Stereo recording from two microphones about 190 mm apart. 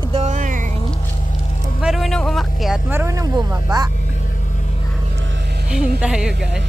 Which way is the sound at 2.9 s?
15° right (ahead or behind).